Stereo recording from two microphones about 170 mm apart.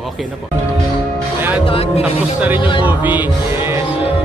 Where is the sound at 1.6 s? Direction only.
35° left (ahead or behind).